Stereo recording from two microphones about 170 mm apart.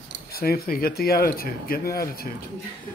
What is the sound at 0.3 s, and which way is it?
Speech, 65° left (ahead or behind).